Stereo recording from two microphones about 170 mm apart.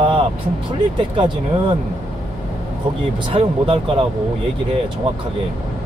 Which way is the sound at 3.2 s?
30° right (ahead or behind).